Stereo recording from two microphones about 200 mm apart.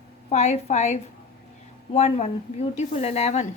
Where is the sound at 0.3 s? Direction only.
30° left (ahead or behind).